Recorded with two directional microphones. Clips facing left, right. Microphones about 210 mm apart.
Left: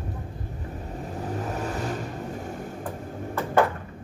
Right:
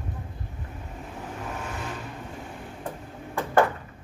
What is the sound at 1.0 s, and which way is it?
Vehicle, 40° left (ahead or behind).